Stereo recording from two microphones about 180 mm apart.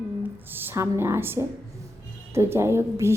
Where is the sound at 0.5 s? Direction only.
15° right (ahead or behind).